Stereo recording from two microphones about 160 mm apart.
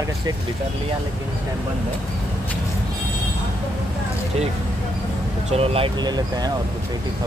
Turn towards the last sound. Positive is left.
turn(degrees=-25)  # may be behind; listen again after turning